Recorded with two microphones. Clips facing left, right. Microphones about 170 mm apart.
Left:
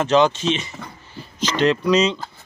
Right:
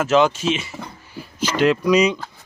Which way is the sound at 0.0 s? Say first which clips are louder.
Even; 5° right (ahead or behind).